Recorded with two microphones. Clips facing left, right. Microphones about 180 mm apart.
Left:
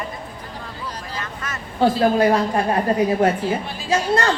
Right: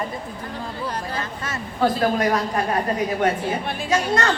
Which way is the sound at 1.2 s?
30° right (ahead or behind).